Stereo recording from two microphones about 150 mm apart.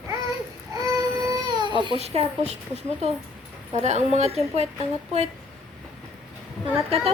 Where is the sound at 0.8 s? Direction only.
20° right (ahead or behind).